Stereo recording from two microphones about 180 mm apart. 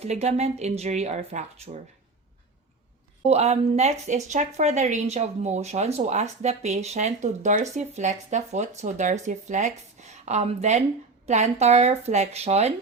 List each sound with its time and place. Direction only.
0.0 s speech: 35° right (ahead or behind)
3.2 s speech: 35° right (ahead or behind)